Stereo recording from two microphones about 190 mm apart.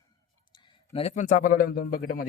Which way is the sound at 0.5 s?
25° left (ahead or behind).